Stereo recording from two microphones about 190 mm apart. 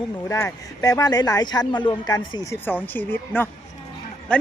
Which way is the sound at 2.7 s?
10° left (ahead or behind).